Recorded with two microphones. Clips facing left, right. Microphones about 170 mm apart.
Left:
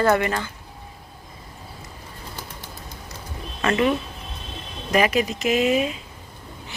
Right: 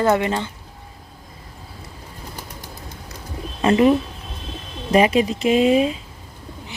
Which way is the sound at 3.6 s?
30° right (ahead or behind).